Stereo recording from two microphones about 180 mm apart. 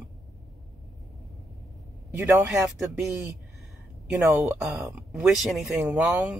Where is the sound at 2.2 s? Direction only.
10° right (ahead or behind).